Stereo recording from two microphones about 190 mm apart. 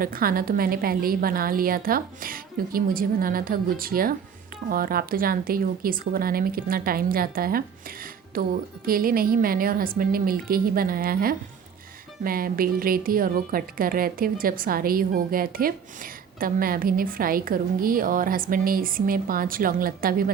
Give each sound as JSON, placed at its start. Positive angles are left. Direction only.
{"t": 0.0, "sound": "a woman's voice", "side_deg": -50}